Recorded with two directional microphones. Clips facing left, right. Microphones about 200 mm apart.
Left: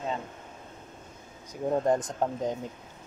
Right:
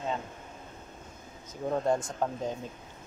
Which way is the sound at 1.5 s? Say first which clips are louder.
Left 3 dB; 20° left (ahead or behind).